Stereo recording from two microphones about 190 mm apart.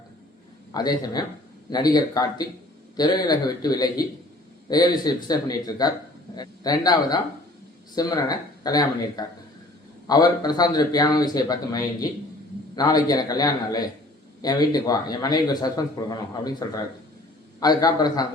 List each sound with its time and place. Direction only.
0.7 s a man's voice: 20° left (ahead or behind)